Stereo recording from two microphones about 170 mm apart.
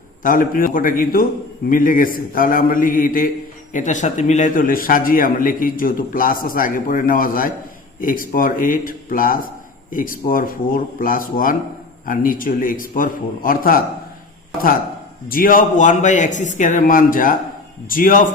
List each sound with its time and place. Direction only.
0.2 s a man's voice: 50° left (ahead or behind)
15.3 s a man's voice: 55° left (ahead or behind)